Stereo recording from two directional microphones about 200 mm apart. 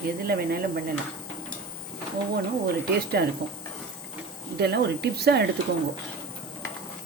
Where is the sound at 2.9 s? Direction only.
50° right (ahead or behind).